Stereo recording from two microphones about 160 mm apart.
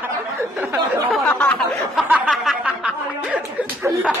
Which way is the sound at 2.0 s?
10° right (ahead or behind).